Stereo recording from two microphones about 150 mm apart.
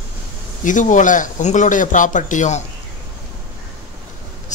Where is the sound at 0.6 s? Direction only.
55° left (ahead or behind).